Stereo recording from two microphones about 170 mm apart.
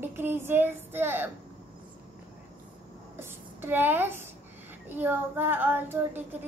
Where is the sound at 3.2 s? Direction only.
10° right (ahead or behind).